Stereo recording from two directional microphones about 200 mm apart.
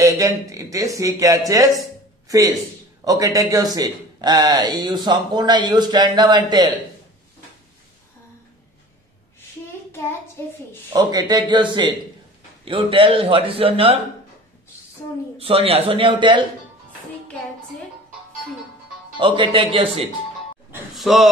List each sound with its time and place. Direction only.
0.0 s speech: 15° right (ahead or behind)
10.4 s a child's voice: 15° left (ahead or behind)
10.9 s speech: 20° right (ahead or behind)
15.3 s speech: 30° right (ahead or behind)
19.1 s speech: 25° right (ahead or behind)
20.7 s gasp: centre (ahead or behind)